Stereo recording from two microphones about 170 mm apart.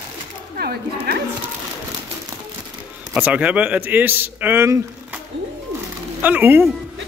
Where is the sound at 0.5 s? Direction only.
65° right (ahead or behind).